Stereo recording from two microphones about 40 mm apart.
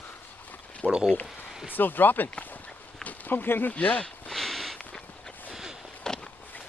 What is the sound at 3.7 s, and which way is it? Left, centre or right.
Speech, left.